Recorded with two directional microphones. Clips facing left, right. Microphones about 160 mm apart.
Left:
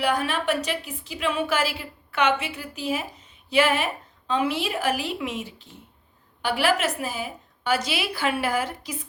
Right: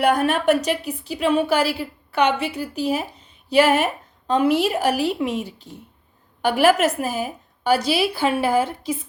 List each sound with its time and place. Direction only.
0.0 s a woman's voice: 50° right (ahead or behind); by 9.0 s 30° right (ahead or behind)